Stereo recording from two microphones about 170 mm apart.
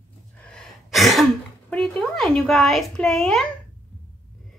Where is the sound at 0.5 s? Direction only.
Centre (ahead or behind).